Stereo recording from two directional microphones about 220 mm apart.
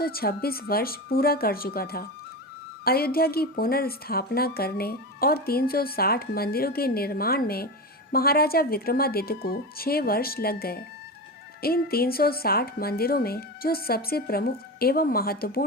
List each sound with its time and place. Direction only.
0.0 s a woman's voice: 45° left (ahead or behind)